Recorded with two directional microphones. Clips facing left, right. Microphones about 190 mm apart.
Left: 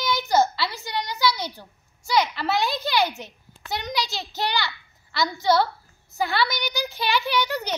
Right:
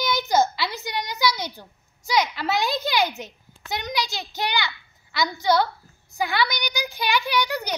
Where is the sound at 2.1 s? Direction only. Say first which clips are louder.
Even; 15° right (ahead or behind).